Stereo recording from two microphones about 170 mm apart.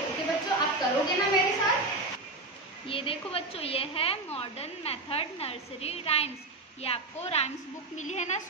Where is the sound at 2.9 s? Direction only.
30° left (ahead or behind).